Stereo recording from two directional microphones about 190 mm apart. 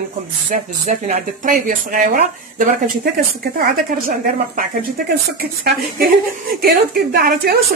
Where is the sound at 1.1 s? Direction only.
45° right (ahead or behind).